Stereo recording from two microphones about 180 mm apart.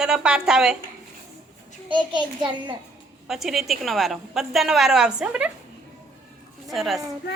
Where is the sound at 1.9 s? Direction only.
25° right (ahead or behind).